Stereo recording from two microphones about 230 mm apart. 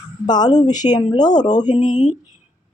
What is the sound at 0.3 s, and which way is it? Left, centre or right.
Speech, centre.